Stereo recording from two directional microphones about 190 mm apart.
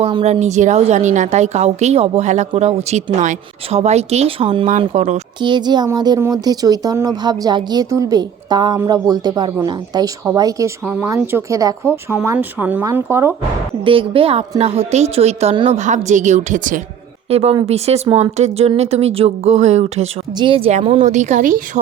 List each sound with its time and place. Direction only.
0.0 s a woman's voice: 30° right (ahead or behind)
5.4 s speech: 25° right (ahead or behind)
13.8 s a woman's voice: 30° right (ahead or behind)